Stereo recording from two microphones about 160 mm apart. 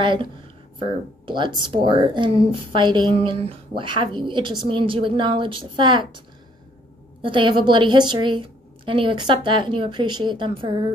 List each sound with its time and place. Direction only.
0.0 s speech: 30° right (ahead or behind)